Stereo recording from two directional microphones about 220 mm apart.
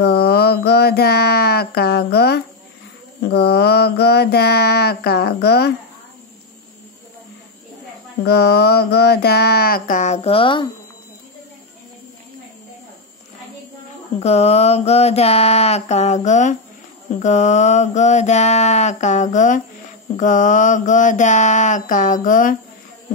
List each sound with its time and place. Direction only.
0.0 s a sound: 45° left (ahead or behind)
3.3 s mantra: 45° left (ahead or behind)
8.2 s mantra: 50° left (ahead or behind); by 10.7 s 20° left (ahead or behind)
14.2 s mantra: 30° left (ahead or behind)